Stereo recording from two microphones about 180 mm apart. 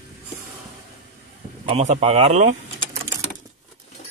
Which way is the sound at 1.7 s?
35° right (ahead or behind).